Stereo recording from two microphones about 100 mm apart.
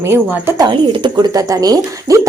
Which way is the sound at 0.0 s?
25° right (ahead or behind).